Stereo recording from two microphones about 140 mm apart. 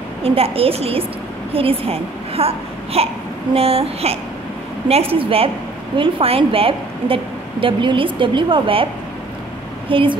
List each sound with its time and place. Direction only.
0.2 s a woman's voice: 45° right (ahead or behind)
9.8 s speech: 40° right (ahead or behind)